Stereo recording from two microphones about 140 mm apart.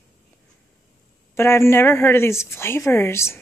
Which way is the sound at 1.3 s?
20° left (ahead or behind).